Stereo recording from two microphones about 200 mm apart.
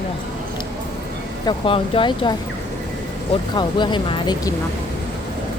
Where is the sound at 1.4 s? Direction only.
25° left (ahead or behind).